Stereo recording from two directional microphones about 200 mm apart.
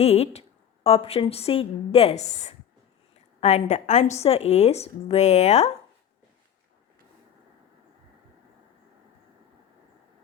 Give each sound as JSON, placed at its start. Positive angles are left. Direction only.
{"t": 0.0, "sound": "a woman's voice", "side_deg": 30}